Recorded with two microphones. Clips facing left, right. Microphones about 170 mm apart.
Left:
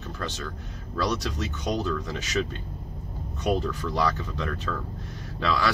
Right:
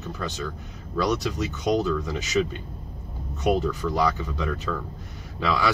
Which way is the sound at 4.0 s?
5° right (ahead or behind).